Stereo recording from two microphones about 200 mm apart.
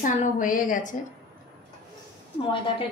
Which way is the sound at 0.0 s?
40° left (ahead or behind).